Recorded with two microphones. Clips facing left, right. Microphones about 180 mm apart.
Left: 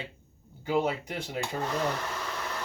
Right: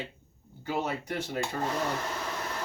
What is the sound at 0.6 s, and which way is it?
Speech, 15° left (ahead or behind).